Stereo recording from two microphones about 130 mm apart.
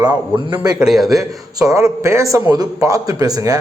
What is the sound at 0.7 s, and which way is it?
Speech, 5° right (ahead or behind).